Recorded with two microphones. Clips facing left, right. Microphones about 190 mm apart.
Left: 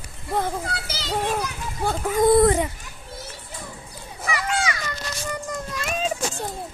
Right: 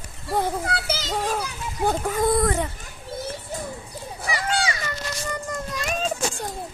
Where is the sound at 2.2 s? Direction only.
20° left (ahead or behind).